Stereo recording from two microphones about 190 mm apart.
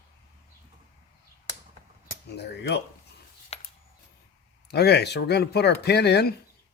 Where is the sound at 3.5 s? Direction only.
35° left (ahead or behind).